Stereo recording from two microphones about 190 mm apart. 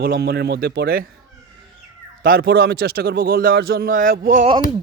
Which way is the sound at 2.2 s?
50° right (ahead or behind).